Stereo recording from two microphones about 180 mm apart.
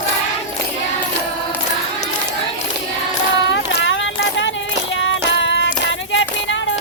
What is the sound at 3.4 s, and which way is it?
Child singing, 85° left.